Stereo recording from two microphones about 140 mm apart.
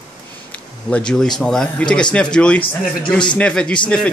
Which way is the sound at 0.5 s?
5° left (ahead or behind).